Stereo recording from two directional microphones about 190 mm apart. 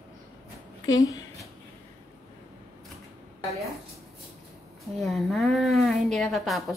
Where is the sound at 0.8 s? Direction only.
20° left (ahead or behind).